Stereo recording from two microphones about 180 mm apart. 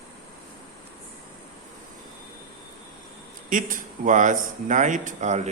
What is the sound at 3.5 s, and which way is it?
Speech, 45° right (ahead or behind).